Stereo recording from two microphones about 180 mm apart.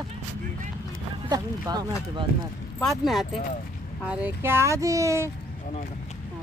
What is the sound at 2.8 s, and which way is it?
Speech, centre (ahead or behind).